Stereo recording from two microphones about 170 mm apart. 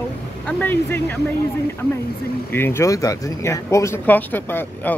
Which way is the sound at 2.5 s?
15° left (ahead or behind).